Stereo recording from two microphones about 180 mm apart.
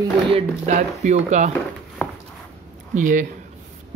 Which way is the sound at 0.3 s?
35° right (ahead or behind).